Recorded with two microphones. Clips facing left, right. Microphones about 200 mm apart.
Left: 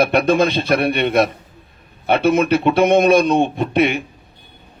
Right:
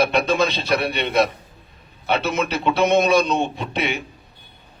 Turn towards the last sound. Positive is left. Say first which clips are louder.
# left 8 dB
turn(degrees=55)  # may be behind; listen again after turning